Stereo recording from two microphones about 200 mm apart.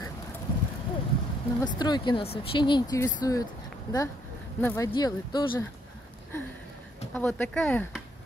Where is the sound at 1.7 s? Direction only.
20° left (ahead or behind).